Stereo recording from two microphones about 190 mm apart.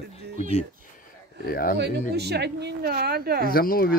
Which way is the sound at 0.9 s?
50° left (ahead or behind).